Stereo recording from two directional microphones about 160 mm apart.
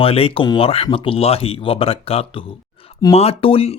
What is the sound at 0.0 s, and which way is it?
Speech, 35° left (ahead or behind).